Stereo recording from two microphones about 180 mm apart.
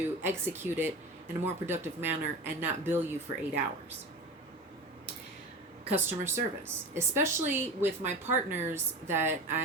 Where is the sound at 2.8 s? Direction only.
10° right (ahead or behind).